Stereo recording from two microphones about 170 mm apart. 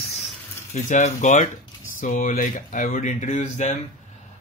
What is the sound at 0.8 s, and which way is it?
Speech, 45° left (ahead or behind).